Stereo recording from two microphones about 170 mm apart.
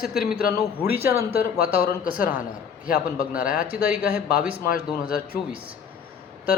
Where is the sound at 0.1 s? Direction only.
5° right (ahead or behind).